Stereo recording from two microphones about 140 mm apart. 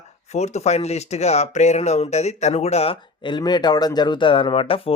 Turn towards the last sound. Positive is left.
turn(degrees=40)  # may be behind; listen again after turning